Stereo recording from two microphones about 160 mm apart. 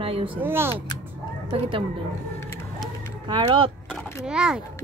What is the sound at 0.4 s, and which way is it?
Speech, 15° right (ahead or behind).